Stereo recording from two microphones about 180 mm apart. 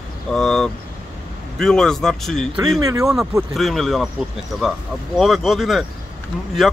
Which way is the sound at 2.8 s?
20° right (ahead or behind).